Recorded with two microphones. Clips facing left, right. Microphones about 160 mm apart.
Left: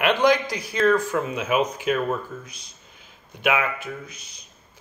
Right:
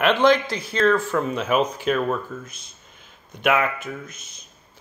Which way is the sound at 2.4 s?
50° right (ahead or behind).